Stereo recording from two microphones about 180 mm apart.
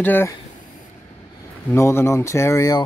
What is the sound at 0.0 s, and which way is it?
Speech, 10° left (ahead or behind).